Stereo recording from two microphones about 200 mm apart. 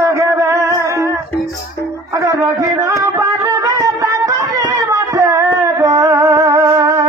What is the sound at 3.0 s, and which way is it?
Music, 15° right (ahead or behind).